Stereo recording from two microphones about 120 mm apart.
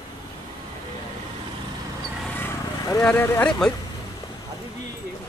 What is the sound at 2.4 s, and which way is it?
Vehicle, 25° left (ahead or behind).